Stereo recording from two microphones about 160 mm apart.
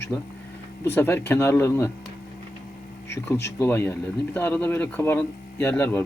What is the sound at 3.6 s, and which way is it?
Speech, 15° left (ahead or behind).